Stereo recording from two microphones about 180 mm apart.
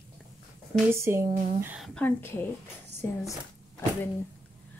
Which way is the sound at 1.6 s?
5° right (ahead or behind).